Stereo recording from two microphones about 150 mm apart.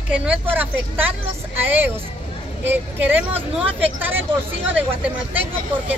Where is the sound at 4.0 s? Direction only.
15° right (ahead or behind).